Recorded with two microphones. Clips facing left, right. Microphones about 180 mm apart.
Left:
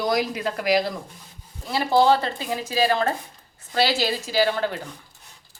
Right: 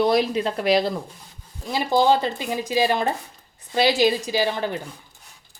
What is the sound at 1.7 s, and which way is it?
Speech, 15° right (ahead or behind).